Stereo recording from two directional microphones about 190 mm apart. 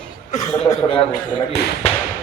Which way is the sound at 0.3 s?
40° left (ahead or behind).